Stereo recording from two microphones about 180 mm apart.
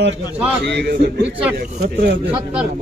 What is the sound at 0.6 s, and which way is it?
Speech, 65° right (ahead or behind).